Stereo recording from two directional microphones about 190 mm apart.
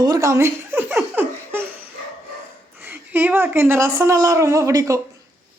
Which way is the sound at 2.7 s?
10° right (ahead or behind).